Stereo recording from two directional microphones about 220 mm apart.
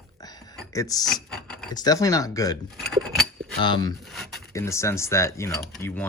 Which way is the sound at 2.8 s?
Centre (ahead or behind).